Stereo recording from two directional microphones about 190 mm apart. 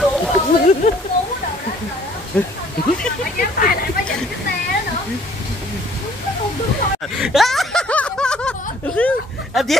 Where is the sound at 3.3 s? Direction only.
50° left (ahead or behind).